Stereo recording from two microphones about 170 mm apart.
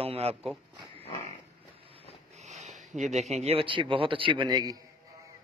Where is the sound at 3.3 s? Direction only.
35° right (ahead or behind).